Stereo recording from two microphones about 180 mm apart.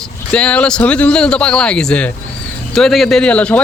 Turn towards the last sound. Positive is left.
turn(degrees=5)  # may be behind; listen again after turning